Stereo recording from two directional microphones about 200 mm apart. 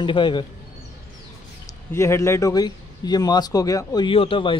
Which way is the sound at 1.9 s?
15° left (ahead or behind).